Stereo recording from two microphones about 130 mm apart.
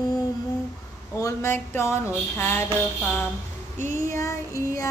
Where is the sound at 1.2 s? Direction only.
20° left (ahead or behind).